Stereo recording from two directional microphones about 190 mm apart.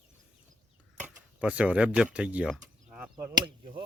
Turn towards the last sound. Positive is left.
turn(degrees=-30)  # may be behind; listen again after turning